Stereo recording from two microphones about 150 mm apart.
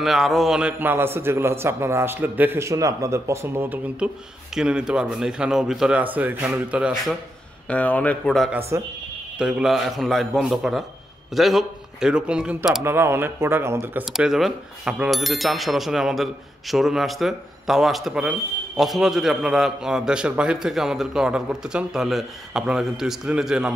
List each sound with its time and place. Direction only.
0.0 s a man's voice: centre (ahead or behind)
7.6 s speech: 10° left (ahead or behind)
8.5 s a man's voice: 15° right (ahead or behind)
9.4 s a man's voice: 5° right (ahead or behind)
12.8 s a man's voice: 15° right (ahead or behind)
14.1 s a man's voice: 5° right (ahead or behind)